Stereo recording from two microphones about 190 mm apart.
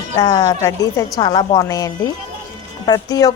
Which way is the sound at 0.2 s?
20° left (ahead or behind).